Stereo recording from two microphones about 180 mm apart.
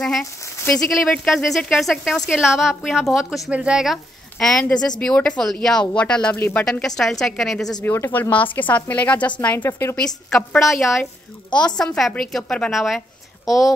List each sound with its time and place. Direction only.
0.2 s a woman's voice: 15° left (ahead or behind)
0.7 s speech: centre (ahead or behind)
7.8 s a woman's voice: 10° left (ahead or behind)